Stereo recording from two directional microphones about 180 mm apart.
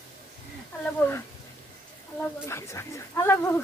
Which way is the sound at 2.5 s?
15° left (ahead or behind).